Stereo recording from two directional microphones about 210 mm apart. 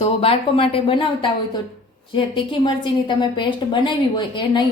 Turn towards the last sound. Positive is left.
turn(degrees=25)  # may be behind; listen again after turning